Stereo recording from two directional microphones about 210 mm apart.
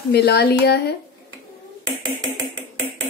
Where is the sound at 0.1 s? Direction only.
50° left (ahead or behind).